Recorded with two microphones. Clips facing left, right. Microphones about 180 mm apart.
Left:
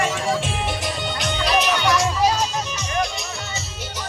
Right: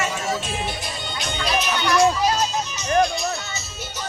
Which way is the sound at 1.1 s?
80° left.